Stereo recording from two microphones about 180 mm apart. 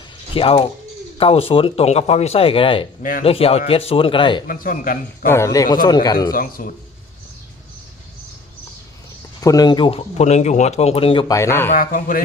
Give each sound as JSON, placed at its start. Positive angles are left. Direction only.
{"t": 0.3, "sound": "a man's voice", "side_deg": 30}
{"t": 3.0, "sound": "speech", "side_deg": 50}
{"t": 3.2, "sound": "a man's voice", "side_deg": 30}
{"t": 4.4, "sound": "speech", "side_deg": 50}
{"t": 5.3, "sound": "a man's voice", "side_deg": 15}
{"t": 6.3, "sound": "speech", "side_deg": 50}
{"t": 9.4, "sound": "a man's voice", "side_deg": 20}
{"t": 11.3, "sound": "speech", "side_deg": 15}
{"t": 11.7, "sound": "speech", "side_deg": 50}